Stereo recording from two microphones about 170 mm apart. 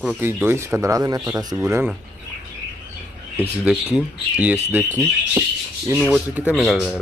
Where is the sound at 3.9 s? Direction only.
10° right (ahead or behind).